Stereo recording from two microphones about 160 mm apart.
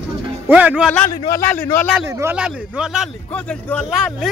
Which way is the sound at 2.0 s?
15° right (ahead or behind).